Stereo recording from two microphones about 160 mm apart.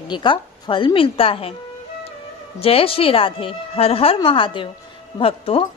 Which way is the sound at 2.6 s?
35° left (ahead or behind).